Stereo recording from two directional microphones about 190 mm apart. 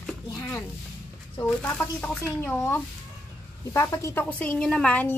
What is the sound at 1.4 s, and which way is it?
Speech, 25° left (ahead or behind).